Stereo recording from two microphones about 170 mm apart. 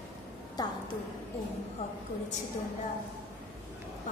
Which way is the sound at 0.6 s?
25° left (ahead or behind).